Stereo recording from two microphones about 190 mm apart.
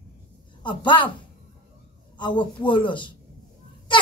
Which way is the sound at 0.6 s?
25° left (ahead or behind).